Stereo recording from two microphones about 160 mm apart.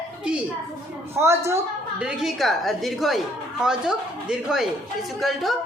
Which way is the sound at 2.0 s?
5° right (ahead or behind).